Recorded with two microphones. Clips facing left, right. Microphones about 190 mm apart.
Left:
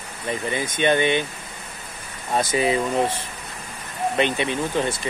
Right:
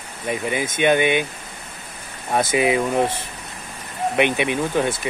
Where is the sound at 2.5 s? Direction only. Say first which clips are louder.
Right 2 dB; 15° right (ahead or behind).